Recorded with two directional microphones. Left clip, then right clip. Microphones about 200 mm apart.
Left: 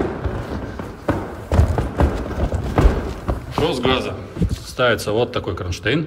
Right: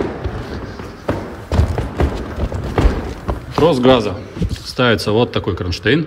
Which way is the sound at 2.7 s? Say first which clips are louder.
Right 1 dB; centre (ahead or behind).